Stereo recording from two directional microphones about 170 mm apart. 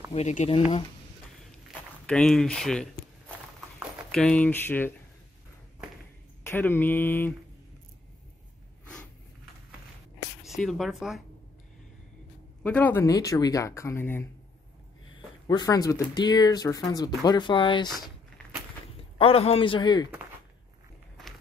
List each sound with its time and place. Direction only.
0.1 s a man's voice: 40° left (ahead or behind)
2.0 s speech: 5° left (ahead or behind)
4.1 s speech: 5° left (ahead or behind)
6.4 s speech: 15° left (ahead or behind)
10.4 s speech: centre (ahead or behind)
12.6 s speech: 10° left (ahead or behind)
15.4 s speech: 20° left (ahead or behind)
19.1 s a man's voice: 35° left (ahead or behind)